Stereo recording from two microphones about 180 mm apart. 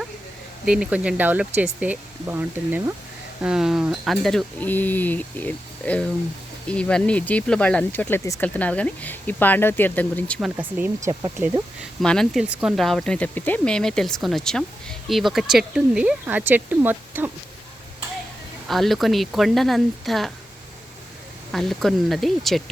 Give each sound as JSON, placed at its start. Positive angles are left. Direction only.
{"t": 0.6, "sound": "speech", "side_deg": -5}
{"t": 10.6, "sound": "speech", "side_deg": -10}
{"t": 11.1, "sound": "speech", "side_deg": -20}
{"t": 12.0, "sound": "speech", "side_deg": 5}
{"t": 18.7, "sound": "speech", "side_deg": 0}
{"t": 21.5, "sound": "speech", "side_deg": 0}